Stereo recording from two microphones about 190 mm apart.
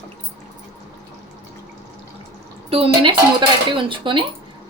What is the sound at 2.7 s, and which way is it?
A woman's voice, 30° right (ahead or behind).